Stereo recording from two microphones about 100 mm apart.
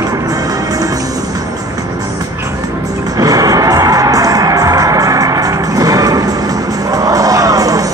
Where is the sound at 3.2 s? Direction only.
35° right (ahead or behind).